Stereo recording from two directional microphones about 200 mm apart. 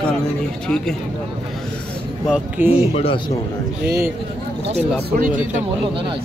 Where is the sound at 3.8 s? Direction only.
10° right (ahead or behind).